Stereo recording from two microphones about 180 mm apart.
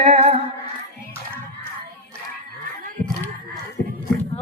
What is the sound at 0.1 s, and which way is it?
Female singing, 35° right (ahead or behind).